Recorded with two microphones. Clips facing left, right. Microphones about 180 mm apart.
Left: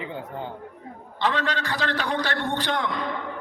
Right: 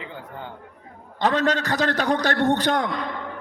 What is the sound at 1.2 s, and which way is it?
A man's voice, 45° right (ahead or behind).